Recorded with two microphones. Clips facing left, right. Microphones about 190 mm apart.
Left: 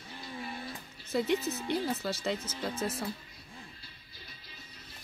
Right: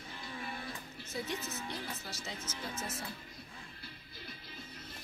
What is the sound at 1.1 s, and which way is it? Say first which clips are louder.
Speech: left 10 dB; 85° left.